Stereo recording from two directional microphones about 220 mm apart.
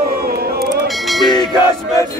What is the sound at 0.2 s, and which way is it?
Music, 45° right (ahead or behind).